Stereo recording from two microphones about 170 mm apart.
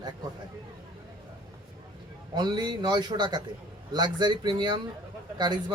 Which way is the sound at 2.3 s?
25° right (ahead or behind).